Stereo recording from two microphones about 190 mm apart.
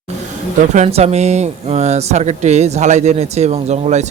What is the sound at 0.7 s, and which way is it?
Speech, 35° right (ahead or behind).